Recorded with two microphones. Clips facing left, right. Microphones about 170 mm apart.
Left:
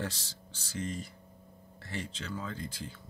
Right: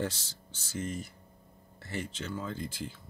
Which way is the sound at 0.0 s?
5° right (ahead or behind).